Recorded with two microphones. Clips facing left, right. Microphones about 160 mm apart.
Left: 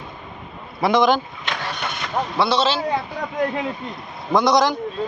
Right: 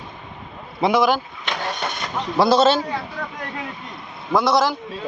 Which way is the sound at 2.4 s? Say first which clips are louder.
Right 5 dB; 45° right (ahead or behind).